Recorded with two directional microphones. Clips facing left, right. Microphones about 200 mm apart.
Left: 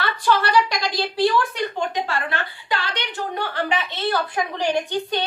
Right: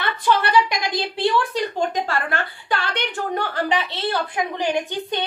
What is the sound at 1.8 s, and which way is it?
A woman's voice, 50° right (ahead or behind).